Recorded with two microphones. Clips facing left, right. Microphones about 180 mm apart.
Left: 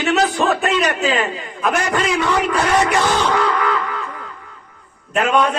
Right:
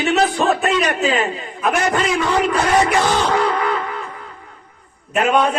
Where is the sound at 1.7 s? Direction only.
30° right (ahead or behind).